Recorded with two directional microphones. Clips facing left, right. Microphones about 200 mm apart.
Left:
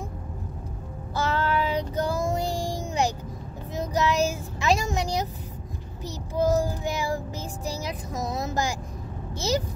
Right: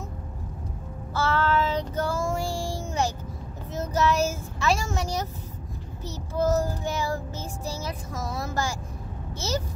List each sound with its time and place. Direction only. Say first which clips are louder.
1.1 s child singing: right 1 dB; 15° left (ahead or behind)
3.7 s speech: even; 15° left (ahead or behind)
6.0 s child singing: left 1 dB; 15° left (ahead or behind)
9.3 s a child's voice: left 4 dB; 15° left (ahead or behind)